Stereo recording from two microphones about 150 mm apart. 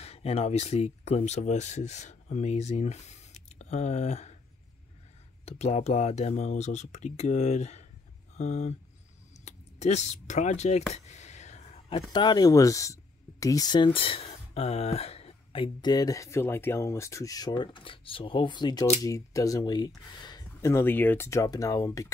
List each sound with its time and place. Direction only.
0.0 s speech: 45° left (ahead or behind)
5.4 s speech: 45° left (ahead or behind)
9.4 s a sound: 50° left (ahead or behind)
12.1 s speech: 30° left (ahead or behind)